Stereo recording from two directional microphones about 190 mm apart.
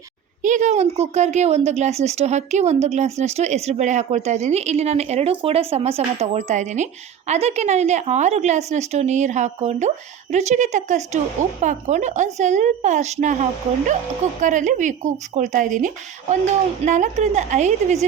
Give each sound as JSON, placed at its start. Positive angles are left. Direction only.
{"t": 0.4, "sound": "speech", "side_deg": -40}